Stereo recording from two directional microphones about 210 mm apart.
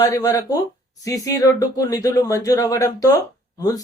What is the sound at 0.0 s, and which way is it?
Speech, 15° left (ahead or behind).